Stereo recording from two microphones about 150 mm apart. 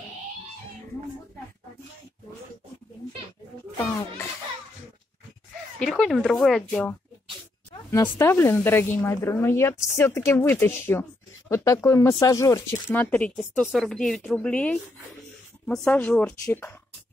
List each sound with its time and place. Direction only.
3.8 s speech: 20° left (ahead or behind)
5.8 s a woman's voice: 5° left (ahead or behind)